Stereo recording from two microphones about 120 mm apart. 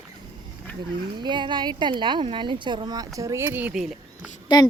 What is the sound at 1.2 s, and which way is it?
Speech, 40° right (ahead or behind).